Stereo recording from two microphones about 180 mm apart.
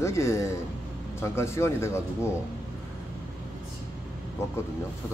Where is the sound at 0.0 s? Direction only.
15° left (ahead or behind).